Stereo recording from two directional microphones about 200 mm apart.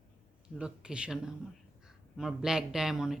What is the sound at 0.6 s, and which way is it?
Speech, 5° right (ahead or behind).